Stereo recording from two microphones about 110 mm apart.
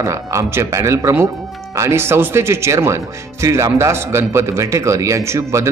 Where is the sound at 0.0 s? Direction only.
30° right (ahead or behind).